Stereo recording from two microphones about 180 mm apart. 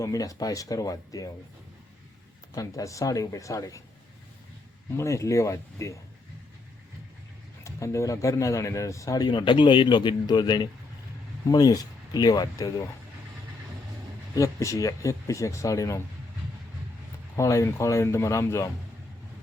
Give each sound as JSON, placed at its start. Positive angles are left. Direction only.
{"t": 0.0, "sound": "speech", "side_deg": 20}
{"t": 2.6, "sound": "speech", "side_deg": 20}
{"t": 4.9, "sound": "speech", "side_deg": 15}
{"t": 7.6, "sound": "speech", "side_deg": 15}
{"t": 14.3, "sound": "speech", "side_deg": 15}
{"t": 17.3, "sound": "speech", "side_deg": 15}